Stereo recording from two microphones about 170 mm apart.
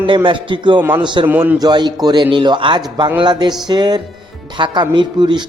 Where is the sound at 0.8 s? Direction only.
15° right (ahead or behind).